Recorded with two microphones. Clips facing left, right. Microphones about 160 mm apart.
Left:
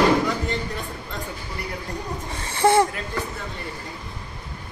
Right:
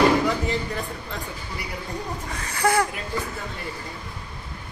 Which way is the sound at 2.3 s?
25° left (ahead or behind).